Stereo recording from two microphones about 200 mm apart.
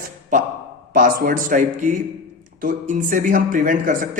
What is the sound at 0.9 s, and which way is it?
A man's voice, 45° right (ahead or behind).